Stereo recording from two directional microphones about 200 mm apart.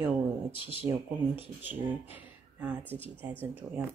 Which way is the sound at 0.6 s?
25° left (ahead or behind).